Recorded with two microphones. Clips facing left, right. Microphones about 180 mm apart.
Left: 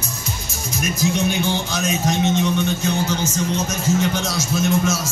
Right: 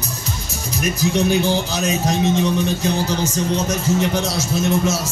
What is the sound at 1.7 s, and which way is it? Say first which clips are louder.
Speech: right 1 dB; 30° right (ahead or behind).